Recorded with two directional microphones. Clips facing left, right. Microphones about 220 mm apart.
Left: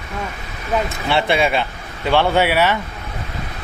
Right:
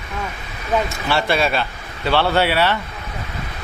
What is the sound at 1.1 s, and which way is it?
A man's voice, 20° left (ahead or behind).